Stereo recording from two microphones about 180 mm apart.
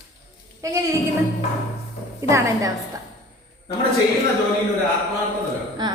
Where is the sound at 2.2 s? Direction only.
15° right (ahead or behind).